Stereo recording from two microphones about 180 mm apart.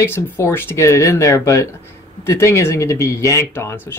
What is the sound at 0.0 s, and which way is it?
Speech, 15° left (ahead or behind).